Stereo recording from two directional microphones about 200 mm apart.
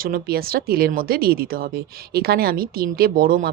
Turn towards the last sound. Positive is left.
turn(degrees=-45)  # may be behind; listen again after turning